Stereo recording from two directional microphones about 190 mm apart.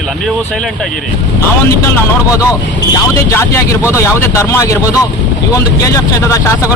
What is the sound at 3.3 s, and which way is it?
Speech, 15° left (ahead or behind).